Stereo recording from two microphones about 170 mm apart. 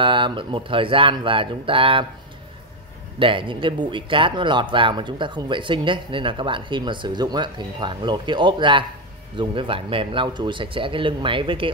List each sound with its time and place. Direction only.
0.0 s speech: 30° right (ahead or behind)
3.2 s speech: 30° right (ahead or behind)